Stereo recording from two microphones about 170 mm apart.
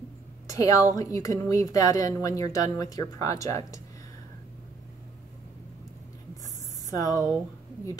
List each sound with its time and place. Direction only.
0.5 s a woman's voice: 20° left (ahead or behind)
7.0 s speech: 20° left (ahead or behind)